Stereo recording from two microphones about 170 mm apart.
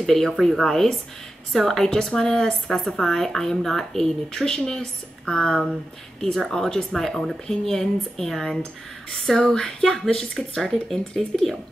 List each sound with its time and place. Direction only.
0.0 s speech: centre (ahead or behind)